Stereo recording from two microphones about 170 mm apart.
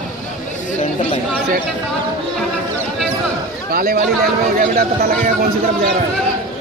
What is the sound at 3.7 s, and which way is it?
Speech, 60° right (ahead or behind).